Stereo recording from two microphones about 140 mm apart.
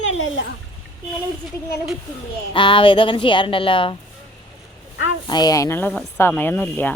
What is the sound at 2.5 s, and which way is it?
Speech, 40° left (ahead or behind).